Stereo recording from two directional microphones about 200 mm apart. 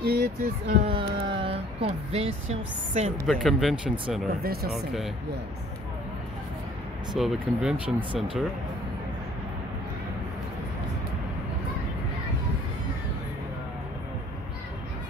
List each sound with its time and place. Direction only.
0.0 s speech: 55° right (ahead or behind)
0.8 s speech: 25° right (ahead or behind)
3.3 s speech: centre (ahead or behind)
4.4 s speech: 50° right (ahead or behind)
4.7 s speech: centre (ahead or behind)
7.2 s speech: centre (ahead or behind)